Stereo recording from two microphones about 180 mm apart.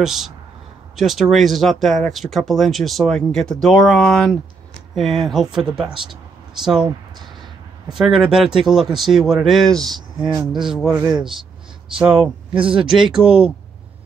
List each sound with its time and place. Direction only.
0.0 s speech: centre (ahead or behind)
7.9 s speech: centre (ahead or behind)
10.9 s speech: 20° right (ahead or behind)
12.0 s speech: 5° right (ahead or behind)